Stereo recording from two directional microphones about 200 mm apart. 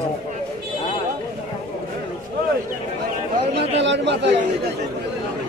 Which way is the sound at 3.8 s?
60° right (ahead or behind).